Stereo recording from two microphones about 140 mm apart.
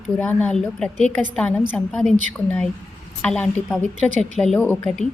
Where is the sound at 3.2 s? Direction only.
5° left (ahead or behind).